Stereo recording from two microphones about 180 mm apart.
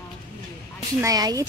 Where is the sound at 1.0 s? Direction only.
20° right (ahead or behind).